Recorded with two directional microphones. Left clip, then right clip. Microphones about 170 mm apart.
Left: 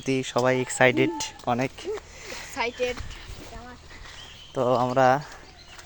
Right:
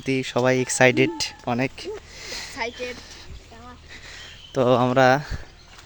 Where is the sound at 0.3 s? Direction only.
35° right (ahead or behind).